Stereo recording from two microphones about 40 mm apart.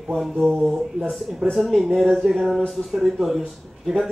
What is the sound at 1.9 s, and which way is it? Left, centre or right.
Mantra, centre.